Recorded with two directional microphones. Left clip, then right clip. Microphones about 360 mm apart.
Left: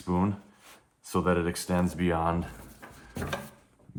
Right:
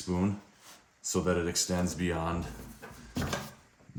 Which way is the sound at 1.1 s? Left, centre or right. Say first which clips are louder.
Left 3 dB; centre.